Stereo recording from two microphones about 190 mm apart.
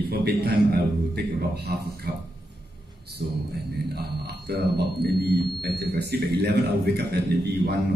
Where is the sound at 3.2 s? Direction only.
50° right (ahead or behind).